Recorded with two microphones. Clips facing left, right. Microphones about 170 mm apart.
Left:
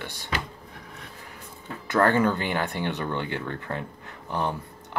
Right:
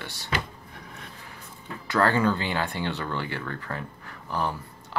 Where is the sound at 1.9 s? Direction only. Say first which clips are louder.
Left 1 dB; 20° left (ahead or behind).